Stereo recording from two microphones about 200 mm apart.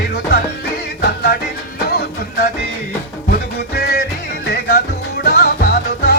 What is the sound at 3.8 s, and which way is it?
Music, 50° left (ahead or behind).